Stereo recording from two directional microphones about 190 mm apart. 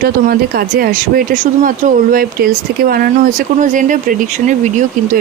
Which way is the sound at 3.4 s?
40° right (ahead or behind).